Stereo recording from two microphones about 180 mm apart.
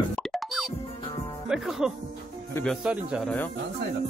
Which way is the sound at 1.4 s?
5° right (ahead or behind).